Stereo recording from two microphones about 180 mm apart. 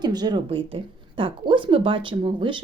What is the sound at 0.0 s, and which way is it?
Speech, 20° right (ahead or behind).